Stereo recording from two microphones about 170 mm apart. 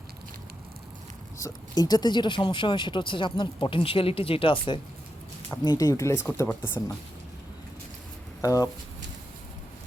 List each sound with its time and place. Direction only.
1.4 s speech: 20° left (ahead or behind)
5.5 s speech: 20° left (ahead or behind)
8.4 s speech: 20° left (ahead or behind)